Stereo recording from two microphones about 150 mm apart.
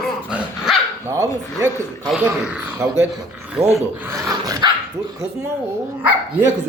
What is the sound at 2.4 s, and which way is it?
Speech, 10° right (ahead or behind).